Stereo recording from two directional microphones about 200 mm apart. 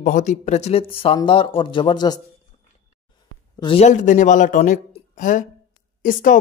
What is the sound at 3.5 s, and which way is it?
A man's voice, 25° left (ahead or behind).